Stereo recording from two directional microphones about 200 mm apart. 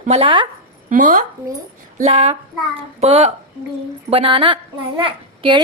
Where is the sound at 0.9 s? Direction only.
40° right (ahead or behind).